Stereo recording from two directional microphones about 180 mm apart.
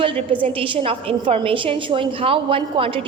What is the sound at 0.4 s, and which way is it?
A woman's voice, 30° right (ahead or behind).